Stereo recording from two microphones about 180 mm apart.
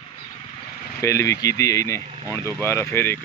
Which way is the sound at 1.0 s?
15° left (ahead or behind).